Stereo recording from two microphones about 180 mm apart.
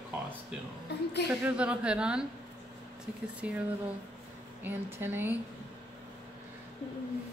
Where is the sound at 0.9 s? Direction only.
70° left (ahead or behind).